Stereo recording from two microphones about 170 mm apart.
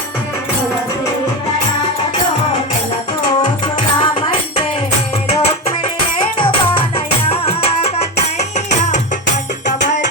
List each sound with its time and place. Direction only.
3.9 s music: 30° left (ahead or behind)